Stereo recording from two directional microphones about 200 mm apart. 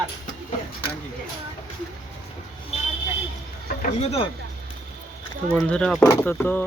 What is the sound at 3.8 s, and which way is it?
Speech, 30° left (ahead or behind).